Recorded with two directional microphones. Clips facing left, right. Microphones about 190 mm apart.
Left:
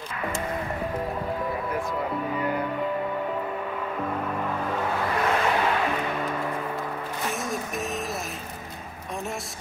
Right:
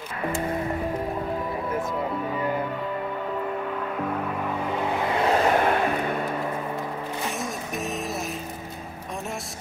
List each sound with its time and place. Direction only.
4.6 s a sound: 15° right (ahead or behind)
5.5 s music: 50° right (ahead or behind)
7.2 s music: centre (ahead or behind)